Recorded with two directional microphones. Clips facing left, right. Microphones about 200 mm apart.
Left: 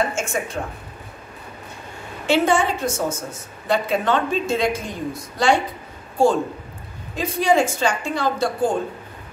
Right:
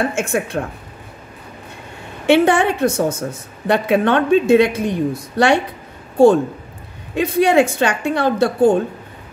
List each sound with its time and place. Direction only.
0.2 s a woman's voice: 60° right (ahead or behind)
2.2 s a woman's voice: 60° right (ahead or behind)